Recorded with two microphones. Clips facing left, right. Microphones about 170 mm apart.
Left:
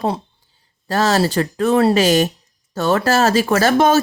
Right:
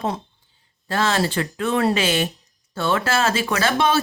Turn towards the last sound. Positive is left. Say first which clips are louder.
# left 6 dB
turn(degrees=45)  # may be behind; listen again after turning